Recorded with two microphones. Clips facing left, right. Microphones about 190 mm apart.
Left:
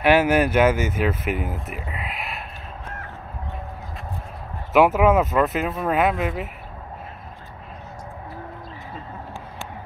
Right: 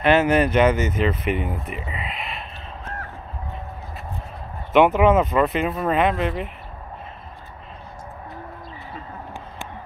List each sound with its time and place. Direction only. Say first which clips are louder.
0.0 s speech: even; 10° left (ahead or behind)
4.7 s speech: right 1 dB; 5° left (ahead or behind)